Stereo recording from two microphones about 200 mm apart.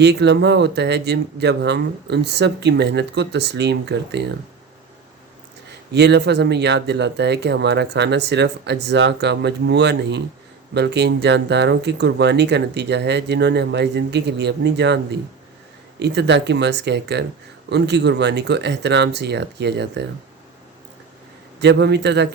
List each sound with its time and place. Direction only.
0.0 s speech: 60° right (ahead or behind)
5.9 s speech: 60° right (ahead or behind)
16.0 s speech: 60° right (ahead or behind)
21.6 s speech: 60° right (ahead or behind)